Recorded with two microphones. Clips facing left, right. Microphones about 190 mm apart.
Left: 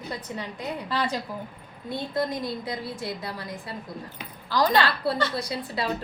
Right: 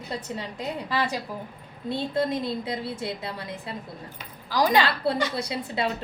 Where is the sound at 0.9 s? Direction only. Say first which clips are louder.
Even; 10° right (ahead or behind).